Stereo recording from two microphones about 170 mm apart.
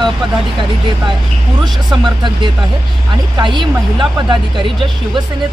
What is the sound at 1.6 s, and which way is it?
Speech, 25° right (ahead or behind).